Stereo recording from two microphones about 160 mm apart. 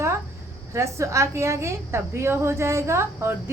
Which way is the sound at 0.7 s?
20° right (ahead or behind).